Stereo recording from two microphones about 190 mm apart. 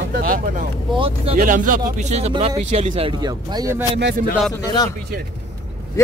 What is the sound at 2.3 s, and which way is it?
Speech, 30° right (ahead or behind).